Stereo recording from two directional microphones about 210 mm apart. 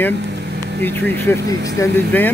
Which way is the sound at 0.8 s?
10° left (ahead or behind).